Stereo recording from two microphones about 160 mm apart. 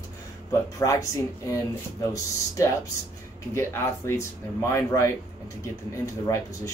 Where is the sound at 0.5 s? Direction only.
20° left (ahead or behind).